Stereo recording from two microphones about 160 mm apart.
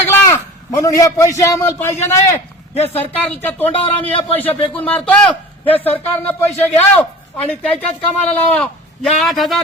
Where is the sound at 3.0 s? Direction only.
10° left (ahead or behind).